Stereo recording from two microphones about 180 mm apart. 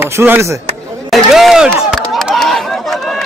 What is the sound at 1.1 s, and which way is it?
Speech, centre (ahead or behind).